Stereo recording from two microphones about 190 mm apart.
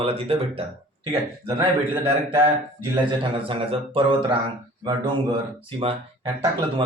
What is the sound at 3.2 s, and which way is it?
Speech, 30° right (ahead or behind).